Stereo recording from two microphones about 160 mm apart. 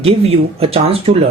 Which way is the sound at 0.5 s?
40° right (ahead or behind).